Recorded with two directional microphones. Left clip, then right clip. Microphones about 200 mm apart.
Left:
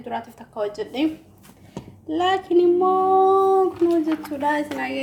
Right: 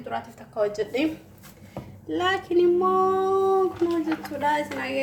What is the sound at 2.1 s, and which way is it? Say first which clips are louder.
Female singing: left 4 dB; 20° left (ahead or behind).